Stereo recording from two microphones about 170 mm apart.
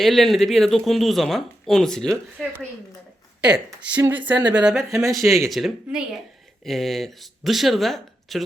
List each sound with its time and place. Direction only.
0.0 s speech: centre (ahead or behind)
3.7 s speech: 5° right (ahead or behind)
4.9 s speech: 15° right (ahead or behind)
5.5 s speech: centre (ahead or behind)